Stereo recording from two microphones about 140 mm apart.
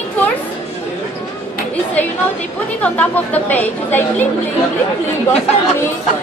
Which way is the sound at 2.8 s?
10° left (ahead or behind).